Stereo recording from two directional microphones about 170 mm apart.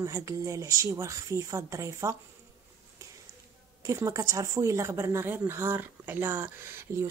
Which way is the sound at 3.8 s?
20° right (ahead or behind).